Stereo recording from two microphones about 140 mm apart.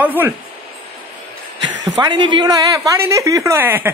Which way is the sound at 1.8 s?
30° right (ahead or behind).